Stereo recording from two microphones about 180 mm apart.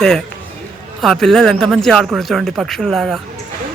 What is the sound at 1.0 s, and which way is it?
Speech, centre (ahead or behind).